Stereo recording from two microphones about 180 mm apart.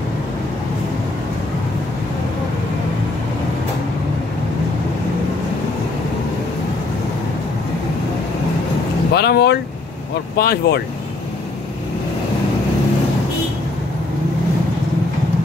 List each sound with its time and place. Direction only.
9.1 s vehicle: 65° left (ahead or behind)
10.3 s speech: 60° left (ahead or behind)